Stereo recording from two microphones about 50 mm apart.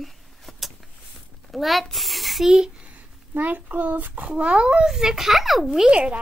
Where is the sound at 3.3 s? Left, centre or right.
Right.